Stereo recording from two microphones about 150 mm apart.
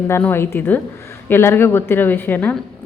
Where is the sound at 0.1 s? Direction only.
15° left (ahead or behind).